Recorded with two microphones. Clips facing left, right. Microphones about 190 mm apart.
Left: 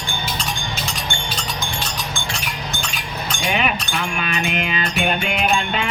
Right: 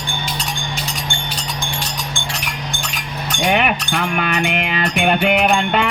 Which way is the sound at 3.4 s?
60° right (ahead or behind).